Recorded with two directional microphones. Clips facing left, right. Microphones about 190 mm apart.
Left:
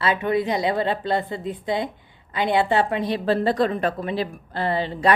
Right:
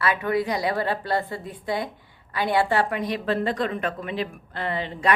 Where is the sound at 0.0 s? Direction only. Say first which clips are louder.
Left 2 dB; 25° left (ahead or behind).